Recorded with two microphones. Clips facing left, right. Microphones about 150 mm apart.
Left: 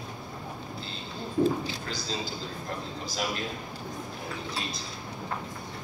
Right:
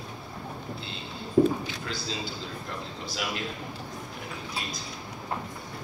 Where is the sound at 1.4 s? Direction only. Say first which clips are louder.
Right 4 dB; 60° right (ahead or behind).